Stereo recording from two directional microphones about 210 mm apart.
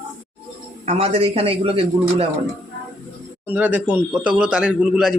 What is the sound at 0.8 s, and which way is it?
A man's voice, 30° right (ahead or behind).